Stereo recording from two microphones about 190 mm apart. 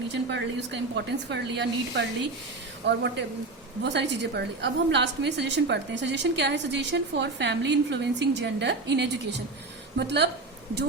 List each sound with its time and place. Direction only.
0.1 s a woman's voice: 65° right (ahead or behind)